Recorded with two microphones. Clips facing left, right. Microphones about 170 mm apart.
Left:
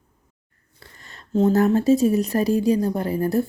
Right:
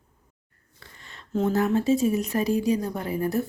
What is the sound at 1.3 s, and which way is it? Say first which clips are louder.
A woman's voice: left 5 dB; 40° left (ahead or behind).